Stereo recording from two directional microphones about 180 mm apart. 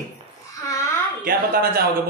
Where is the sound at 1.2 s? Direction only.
55° right (ahead or behind).